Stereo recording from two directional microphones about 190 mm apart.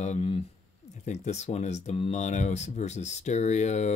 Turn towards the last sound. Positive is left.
turn(degrees=35)  # may be behind; listen again after turning